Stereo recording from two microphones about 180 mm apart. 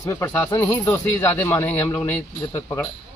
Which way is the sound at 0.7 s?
25° left (ahead or behind).